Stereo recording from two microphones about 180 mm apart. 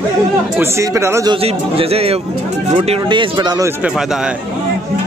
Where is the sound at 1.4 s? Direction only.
35° right (ahead or behind).